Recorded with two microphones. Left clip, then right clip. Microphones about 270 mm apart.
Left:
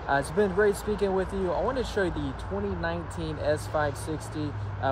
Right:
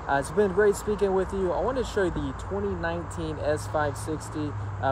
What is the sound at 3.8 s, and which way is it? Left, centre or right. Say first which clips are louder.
Speech: right 1 dB; centre.